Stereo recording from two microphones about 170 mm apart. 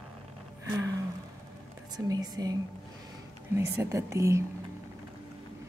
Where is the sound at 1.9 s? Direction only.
20° right (ahead or behind).